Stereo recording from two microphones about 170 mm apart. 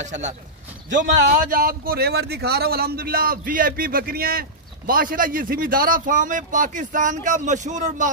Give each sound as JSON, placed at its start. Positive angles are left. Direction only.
{"t": 0.0, "sound": "a man's voice", "side_deg": -45}